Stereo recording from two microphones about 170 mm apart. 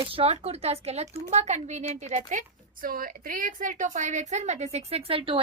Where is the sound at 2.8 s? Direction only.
55° right (ahead or behind); by 5.4 s 30° right (ahead or behind).